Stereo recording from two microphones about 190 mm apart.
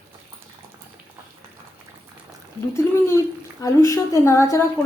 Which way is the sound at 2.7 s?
15° left (ahead or behind).